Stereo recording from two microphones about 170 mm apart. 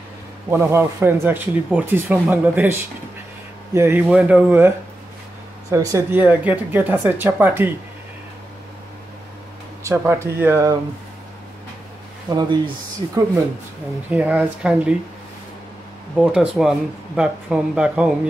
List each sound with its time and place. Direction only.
0.5 s speech: 15° right (ahead or behind)
3.7 s speech: 15° right (ahead or behind)
9.8 s speech: 15° right (ahead or behind)
12.3 s speech: 25° right (ahead or behind)
14.1 s speech: 10° right (ahead or behind)
16.2 s speech: 5° right (ahead or behind)